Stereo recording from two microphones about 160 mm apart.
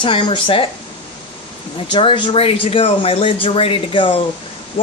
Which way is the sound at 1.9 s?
30° left (ahead or behind).